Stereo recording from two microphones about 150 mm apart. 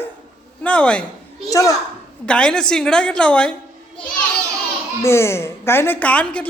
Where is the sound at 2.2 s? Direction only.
5° left (ahead or behind).